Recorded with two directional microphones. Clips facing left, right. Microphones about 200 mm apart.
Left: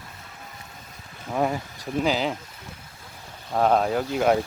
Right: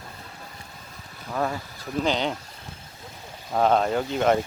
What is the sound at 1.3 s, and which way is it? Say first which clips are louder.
Speech: left 3 dB; 15° left (ahead or behind).